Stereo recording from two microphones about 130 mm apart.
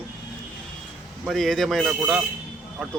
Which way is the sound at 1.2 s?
Centre (ahead or behind).